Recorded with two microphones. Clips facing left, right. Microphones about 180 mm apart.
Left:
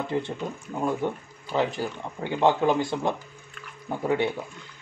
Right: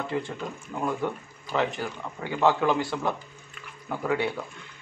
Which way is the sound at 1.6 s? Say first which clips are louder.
Left 2 dB; 30° left (ahead or behind).